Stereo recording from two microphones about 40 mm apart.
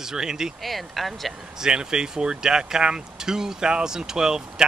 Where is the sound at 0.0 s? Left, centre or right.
Centre.